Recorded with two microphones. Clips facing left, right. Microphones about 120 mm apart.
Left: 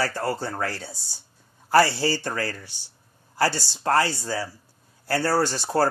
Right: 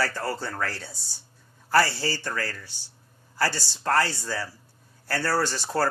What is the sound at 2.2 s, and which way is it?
Speech, 25° left (ahead or behind).